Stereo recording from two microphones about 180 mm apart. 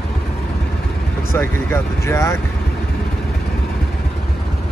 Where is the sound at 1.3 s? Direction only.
15° left (ahead or behind).